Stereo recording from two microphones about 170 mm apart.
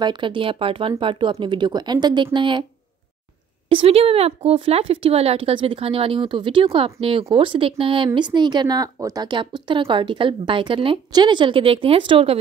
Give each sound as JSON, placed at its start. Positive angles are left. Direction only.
{"t": 0.0, "sound": "speech", "side_deg": -30}
{"t": 3.6, "sound": "speech", "side_deg": -35}